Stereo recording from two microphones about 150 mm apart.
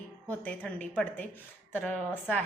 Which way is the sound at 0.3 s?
10° left (ahead or behind).